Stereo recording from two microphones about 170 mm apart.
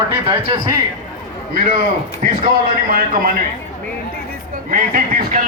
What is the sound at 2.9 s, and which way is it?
Speech, 55° right (ahead or behind).